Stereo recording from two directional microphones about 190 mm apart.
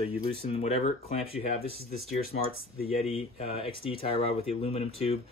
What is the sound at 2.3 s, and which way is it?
Speech, 50° left (ahead or behind).